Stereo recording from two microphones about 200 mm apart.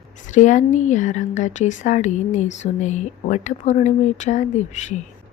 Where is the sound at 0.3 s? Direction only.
40° left (ahead or behind).